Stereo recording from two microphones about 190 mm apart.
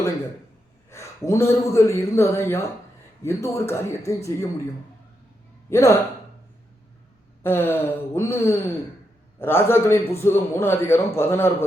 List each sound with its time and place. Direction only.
0.9 s a man's voice: 15° left (ahead or behind)
5.7 s a man's voice: 15° left (ahead or behind)
7.4 s a man's voice: 10° left (ahead or behind)